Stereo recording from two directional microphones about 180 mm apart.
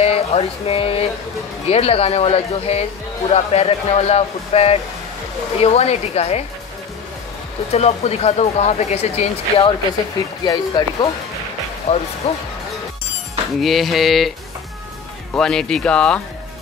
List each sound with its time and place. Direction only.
0.0 s speech: 35° left (ahead or behind)
7.7 s speech: 35° left (ahead or behind)
11.9 s speech: 35° left (ahead or behind)
13.6 s speech: centre (ahead or behind)
15.3 s speech: 5° left (ahead or behind)